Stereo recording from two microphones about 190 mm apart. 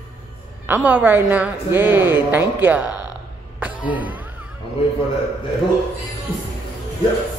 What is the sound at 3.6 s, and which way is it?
Music, 10° right (ahead or behind).